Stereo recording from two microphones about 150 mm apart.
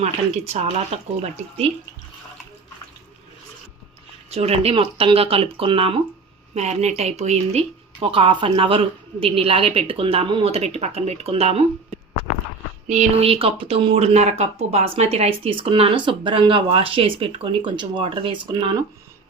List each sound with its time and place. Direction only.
0.0 s speech: 45° right (ahead or behind)
4.3 s speech: 45° right (ahead or behind)
12.9 s speech: 50° right (ahead or behind); by 18.9 s 25° right (ahead or behind)